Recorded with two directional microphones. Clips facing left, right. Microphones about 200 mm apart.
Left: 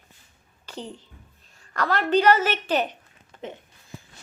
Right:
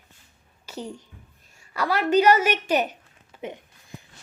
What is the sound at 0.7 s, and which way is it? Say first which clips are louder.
A woman's voice: right 2 dB; 10° right (ahead or behind).